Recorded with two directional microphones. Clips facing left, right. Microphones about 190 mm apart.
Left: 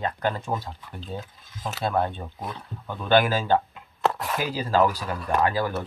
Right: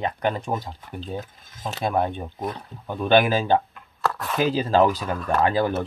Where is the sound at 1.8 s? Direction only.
15° right (ahead or behind).